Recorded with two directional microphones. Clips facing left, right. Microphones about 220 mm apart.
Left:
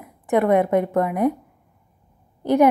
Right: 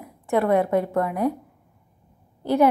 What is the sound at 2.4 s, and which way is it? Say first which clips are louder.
Speech: left 3 dB; 20° left (ahead or behind).